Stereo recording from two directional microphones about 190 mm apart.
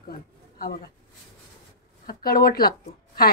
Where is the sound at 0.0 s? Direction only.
50° left (ahead or behind).